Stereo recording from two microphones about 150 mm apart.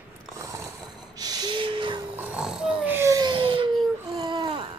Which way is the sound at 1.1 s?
25° right (ahead or behind).